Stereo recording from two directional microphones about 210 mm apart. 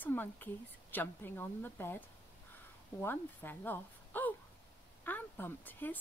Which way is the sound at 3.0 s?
10° left (ahead or behind).